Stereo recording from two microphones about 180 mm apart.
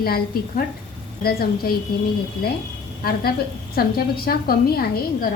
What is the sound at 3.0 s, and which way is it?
A woman's voice, 55° left (ahead or behind).